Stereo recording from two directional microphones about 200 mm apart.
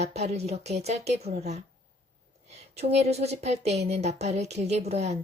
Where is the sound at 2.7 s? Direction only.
30° right (ahead or behind).